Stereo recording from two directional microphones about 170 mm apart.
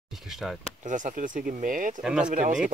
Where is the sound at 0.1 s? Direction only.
Centre (ahead or behind).